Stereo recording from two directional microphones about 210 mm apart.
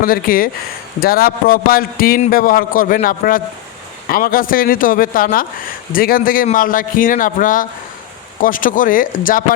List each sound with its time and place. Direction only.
0.0 s a man's voice: 45° left (ahead or behind)